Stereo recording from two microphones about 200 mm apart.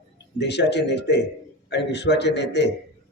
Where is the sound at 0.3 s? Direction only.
60° left (ahead or behind).